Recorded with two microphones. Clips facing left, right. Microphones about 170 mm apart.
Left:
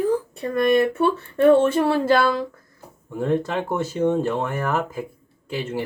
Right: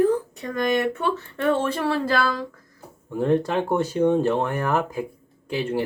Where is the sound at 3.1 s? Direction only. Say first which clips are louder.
Right 1 dB; 10° right (ahead or behind).